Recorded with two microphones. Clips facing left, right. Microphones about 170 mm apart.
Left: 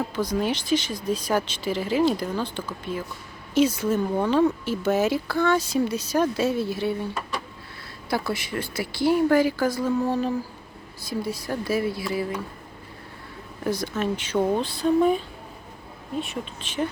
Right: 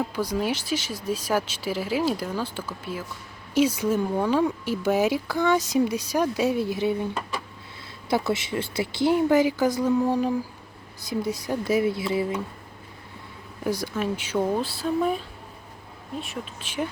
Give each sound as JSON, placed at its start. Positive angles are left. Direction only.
{"t": 0.2, "sound": "speech", "side_deg": -10}
{"t": 8.1, "sound": "speech", "side_deg": -25}
{"t": 13.7, "sound": "speech", "side_deg": -10}
{"t": 16.2, "sound": "speech", "side_deg": -5}